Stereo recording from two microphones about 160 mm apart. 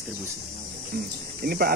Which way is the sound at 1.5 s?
70° right (ahead or behind).